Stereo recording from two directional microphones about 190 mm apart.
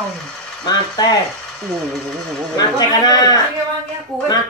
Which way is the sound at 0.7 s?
20° left (ahead or behind).